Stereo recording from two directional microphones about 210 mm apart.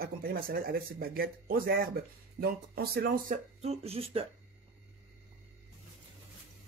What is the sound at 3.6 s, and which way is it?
Speech, 30° right (ahead or behind).